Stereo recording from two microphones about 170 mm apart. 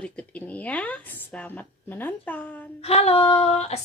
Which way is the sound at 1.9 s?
10° left (ahead or behind).